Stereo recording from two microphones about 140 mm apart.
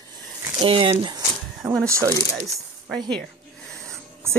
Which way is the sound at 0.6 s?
35° right (ahead or behind).